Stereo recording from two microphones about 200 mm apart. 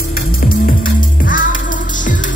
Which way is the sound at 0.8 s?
45° left (ahead or behind).